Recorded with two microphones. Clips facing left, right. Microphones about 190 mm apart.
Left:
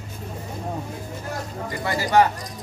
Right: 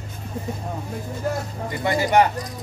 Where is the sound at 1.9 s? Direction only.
20° right (ahead or behind).